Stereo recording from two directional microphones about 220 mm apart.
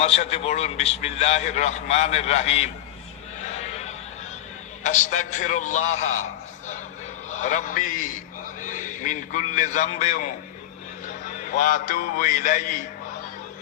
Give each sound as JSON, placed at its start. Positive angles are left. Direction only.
{"t": 0.0, "sound": "a man's voice", "side_deg": 30}
{"t": 4.8, "sound": "a man's voice", "side_deg": 35}
{"t": 7.3, "sound": "a man's voice", "side_deg": 35}
{"t": 11.3, "sound": "a man's voice", "side_deg": 35}